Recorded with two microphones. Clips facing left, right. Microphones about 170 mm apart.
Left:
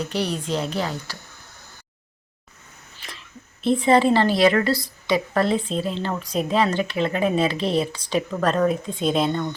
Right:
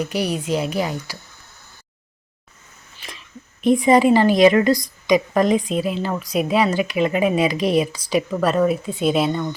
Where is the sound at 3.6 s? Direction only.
15° right (ahead or behind).